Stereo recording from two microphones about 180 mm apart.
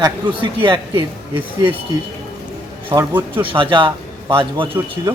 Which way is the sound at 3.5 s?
30° right (ahead or behind).